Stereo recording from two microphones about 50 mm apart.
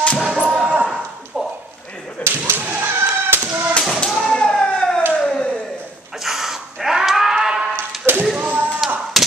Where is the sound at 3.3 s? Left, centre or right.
Right.